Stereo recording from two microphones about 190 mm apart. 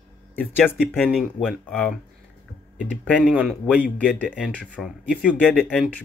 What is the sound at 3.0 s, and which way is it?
Speech, 5° left (ahead or behind).